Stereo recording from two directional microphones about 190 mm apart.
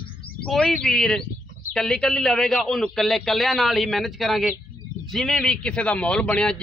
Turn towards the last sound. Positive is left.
turn(degrees=5)  # may be behind; listen again after turning